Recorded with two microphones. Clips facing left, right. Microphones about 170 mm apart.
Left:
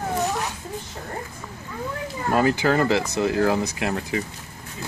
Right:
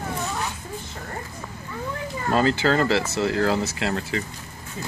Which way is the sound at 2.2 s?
15° left (ahead or behind).